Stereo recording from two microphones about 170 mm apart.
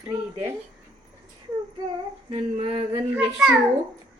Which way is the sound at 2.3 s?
35° right (ahead or behind).